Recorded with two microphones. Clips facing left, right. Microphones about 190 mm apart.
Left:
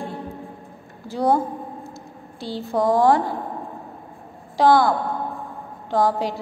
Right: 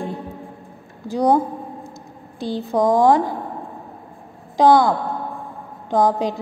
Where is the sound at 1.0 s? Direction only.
15° right (ahead or behind).